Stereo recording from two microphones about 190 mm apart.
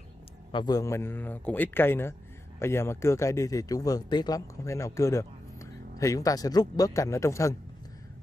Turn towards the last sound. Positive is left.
turn(degrees=15)  # may be behind; listen again after turning